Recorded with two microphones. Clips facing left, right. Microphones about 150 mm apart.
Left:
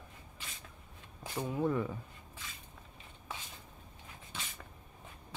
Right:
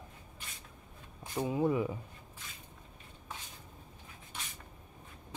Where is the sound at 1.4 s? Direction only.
10° right (ahead or behind).